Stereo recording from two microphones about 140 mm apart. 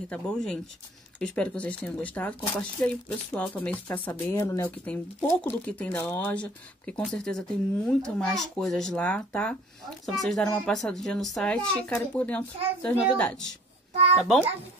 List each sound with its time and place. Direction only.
0.1 s speech: 5° left (ahead or behind)